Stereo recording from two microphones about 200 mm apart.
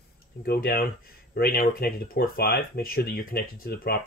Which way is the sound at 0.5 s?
50° left (ahead or behind).